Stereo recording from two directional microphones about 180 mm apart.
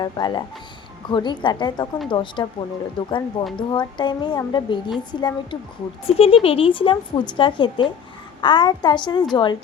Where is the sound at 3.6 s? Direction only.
25° left (ahead or behind).